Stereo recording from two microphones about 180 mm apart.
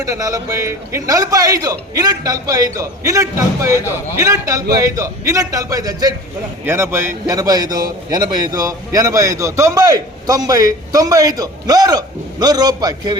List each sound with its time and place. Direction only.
0.0 s a man's voice: 20° right (ahead or behind)